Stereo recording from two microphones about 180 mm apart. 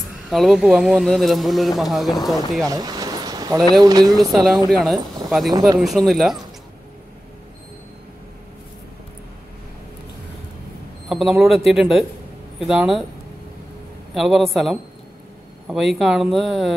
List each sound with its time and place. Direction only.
0.3 s speech: centre (ahead or behind)
2.7 s a sound: 20° right (ahead or behind)
3.8 s speech: 20° right (ahead or behind)
4.1 s speech: centre (ahead or behind)
5.5 s speech: 20° right (ahead or behind)
5.8 s speech: centre (ahead or behind)
11.1 s speech: centre (ahead or behind)
14.1 s speech: centre (ahead or behind)